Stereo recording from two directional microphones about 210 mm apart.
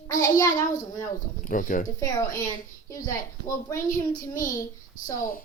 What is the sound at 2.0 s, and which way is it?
Speech, 15° left (ahead or behind).